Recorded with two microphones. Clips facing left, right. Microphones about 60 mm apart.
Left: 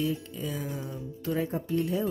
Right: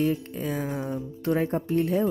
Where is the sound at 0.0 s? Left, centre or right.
Right.